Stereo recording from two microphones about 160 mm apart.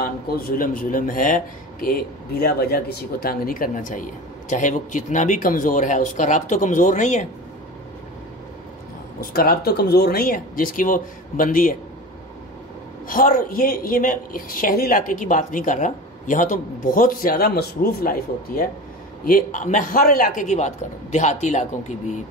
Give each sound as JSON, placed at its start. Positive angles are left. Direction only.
{"t": 0.0, "sound": "a woman's voice", "side_deg": 65}
{"t": 9.2, "sound": "a woman's voice", "side_deg": 65}
{"t": 13.1, "sound": "a woman's voice", "side_deg": 55}
{"t": 19.2, "sound": "speech", "side_deg": 55}